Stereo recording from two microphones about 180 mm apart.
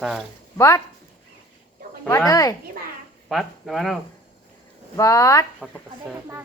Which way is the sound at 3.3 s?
Centre (ahead or behind).